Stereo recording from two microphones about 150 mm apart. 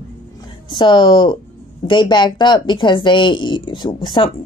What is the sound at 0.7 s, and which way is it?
Speech, 30° left (ahead or behind).